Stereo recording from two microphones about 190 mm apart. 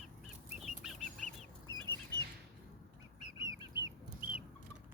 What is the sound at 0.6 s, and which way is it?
Bird flight, centre (ahead or behind).